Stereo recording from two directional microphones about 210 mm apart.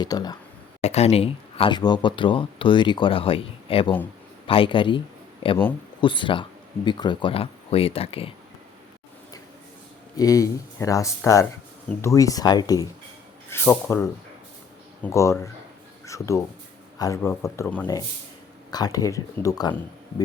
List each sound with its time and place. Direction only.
0.0 s speech: 20° left (ahead or behind)
0.8 s a man's voice: 30° left (ahead or behind)
10.2 s speech: 15° left (ahead or behind)